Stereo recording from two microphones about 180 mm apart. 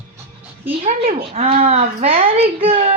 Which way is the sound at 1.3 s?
35° right (ahead or behind).